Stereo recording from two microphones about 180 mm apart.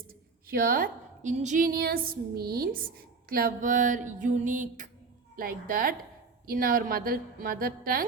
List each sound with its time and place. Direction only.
0.1 s a woman's voice: 55° right (ahead or behind)